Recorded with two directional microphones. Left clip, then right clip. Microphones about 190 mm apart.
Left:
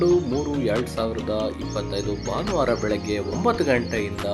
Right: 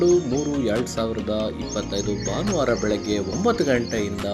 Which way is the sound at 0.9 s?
40° right (ahead or behind).